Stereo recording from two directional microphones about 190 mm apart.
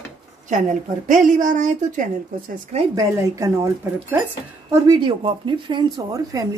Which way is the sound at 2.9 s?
15° right (ahead or behind).